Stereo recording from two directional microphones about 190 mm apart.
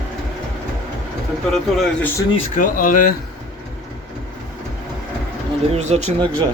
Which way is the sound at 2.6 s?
45° left (ahead or behind).